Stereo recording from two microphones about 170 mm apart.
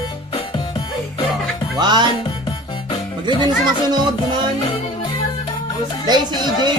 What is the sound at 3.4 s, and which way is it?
Speech, 25° right (ahead or behind).